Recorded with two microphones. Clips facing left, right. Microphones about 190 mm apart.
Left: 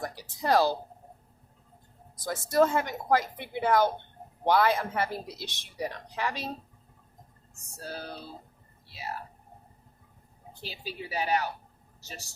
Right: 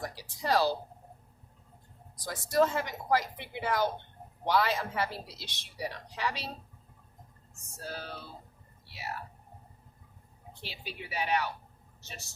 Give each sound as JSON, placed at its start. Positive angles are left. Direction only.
{"t": 0.0, "sound": "a sound", "side_deg": 50}
{"t": 2.2, "sound": "speech", "side_deg": 50}
{"t": 7.9, "sound": "speech", "side_deg": 35}
{"t": 10.6, "sound": "speech", "side_deg": 35}